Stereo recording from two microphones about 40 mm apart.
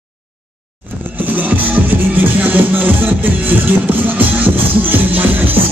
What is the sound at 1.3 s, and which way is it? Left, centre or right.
Music, right.